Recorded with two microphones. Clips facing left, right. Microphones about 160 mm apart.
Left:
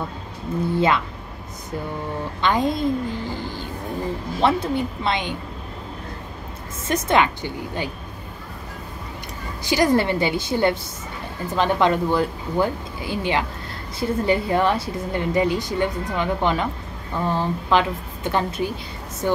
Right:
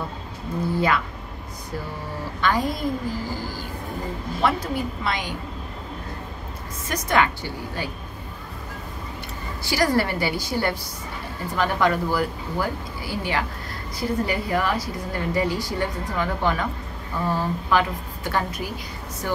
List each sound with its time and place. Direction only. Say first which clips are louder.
0.7 s a woman's voice: left 3 dB; 25° left (ahead or behind)
2.4 s a woman's voice: left 3 dB; 25° left (ahead or behind)
6.9 s a woman's voice: left 3 dB; 25° left (ahead or behind)
9.7 s a woman's voice: left 3 dB; 20° left (ahead or behind)
17.6 s a woman's voice: left 2 dB; 20° left (ahead or behind)